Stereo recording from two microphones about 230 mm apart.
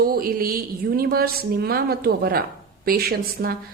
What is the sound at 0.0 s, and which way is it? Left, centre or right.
A woman's voice, right.